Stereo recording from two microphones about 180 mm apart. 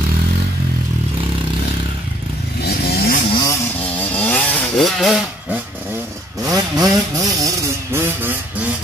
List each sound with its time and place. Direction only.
2.6 s vehicle: 60° left (ahead or behind)
3.3 s vehicle: 25° left (ahead or behind)
4.1 s chainsaw: 10° left (ahead or behind)
6.4 s vehicle: 20° right (ahead or behind)